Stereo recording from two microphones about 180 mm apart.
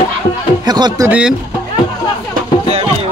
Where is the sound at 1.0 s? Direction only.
5° right (ahead or behind).